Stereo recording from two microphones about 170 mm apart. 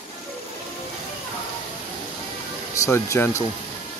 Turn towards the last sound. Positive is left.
turn(degrees=15)  # may be behind; listen again after turning